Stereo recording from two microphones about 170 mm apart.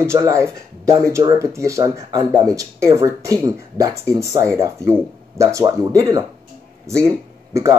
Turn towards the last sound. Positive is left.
turn(degrees=-15)  # may be behind; listen again after turning